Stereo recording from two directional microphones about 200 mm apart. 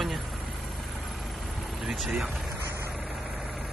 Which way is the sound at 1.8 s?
Centre (ahead or behind).